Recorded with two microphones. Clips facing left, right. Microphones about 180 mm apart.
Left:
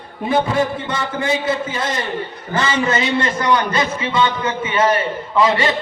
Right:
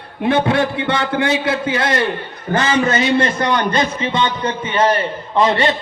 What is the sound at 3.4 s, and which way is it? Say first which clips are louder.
Speech: right 1 dB; 50° right (ahead or behind).